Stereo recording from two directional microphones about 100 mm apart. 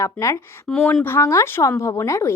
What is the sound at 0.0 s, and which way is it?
A woman's voice, 30° left (ahead or behind).